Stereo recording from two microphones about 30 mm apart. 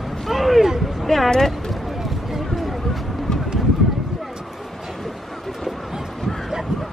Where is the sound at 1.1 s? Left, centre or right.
Centre.